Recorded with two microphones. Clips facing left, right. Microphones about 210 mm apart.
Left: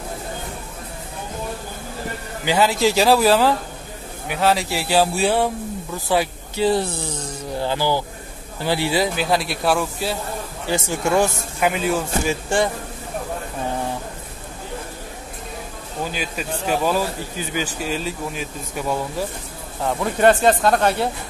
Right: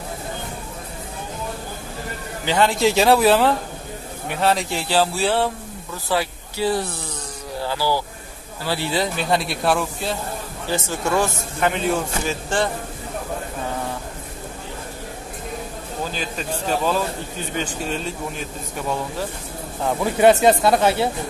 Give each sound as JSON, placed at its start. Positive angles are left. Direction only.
{"t": 2.4, "sound": "speech", "side_deg": 5}
{"t": 10.7, "sound": "speech", "side_deg": 15}
{"t": 16.1, "sound": "speech", "side_deg": 10}
{"t": 19.8, "sound": "speech", "side_deg": -5}